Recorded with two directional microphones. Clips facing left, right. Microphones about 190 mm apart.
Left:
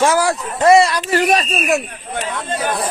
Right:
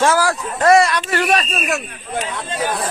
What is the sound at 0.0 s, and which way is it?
Speech, 15° left (ahead or behind).